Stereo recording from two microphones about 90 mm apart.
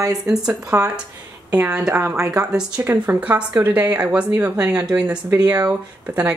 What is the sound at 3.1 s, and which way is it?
Speech, 15° right (ahead or behind).